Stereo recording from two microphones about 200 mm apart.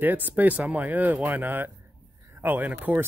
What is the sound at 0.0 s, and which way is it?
Speech, 10° right (ahead or behind).